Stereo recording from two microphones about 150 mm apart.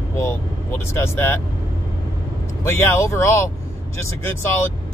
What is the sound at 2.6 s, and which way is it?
Speech, 15° left (ahead or behind).